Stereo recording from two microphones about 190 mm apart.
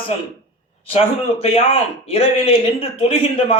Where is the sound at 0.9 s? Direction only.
30° left (ahead or behind).